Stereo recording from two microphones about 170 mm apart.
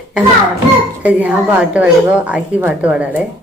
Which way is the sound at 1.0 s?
10° right (ahead or behind).